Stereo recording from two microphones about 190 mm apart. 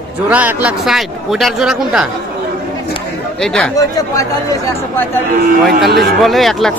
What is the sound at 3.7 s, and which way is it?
Speech, 20° left (ahead or behind).